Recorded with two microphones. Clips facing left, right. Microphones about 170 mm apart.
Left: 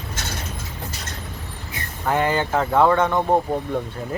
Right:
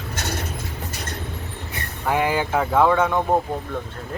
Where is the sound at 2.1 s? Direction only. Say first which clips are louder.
Left 1 dB; 10° right (ahead or behind).